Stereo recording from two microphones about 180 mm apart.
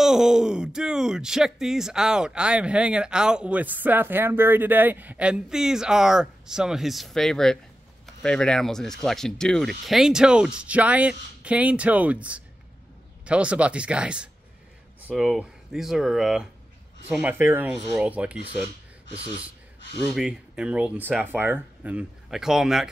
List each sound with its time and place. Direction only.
0.0 s speech: 5° right (ahead or behind)
20.0 s speech: 5° right (ahead or behind)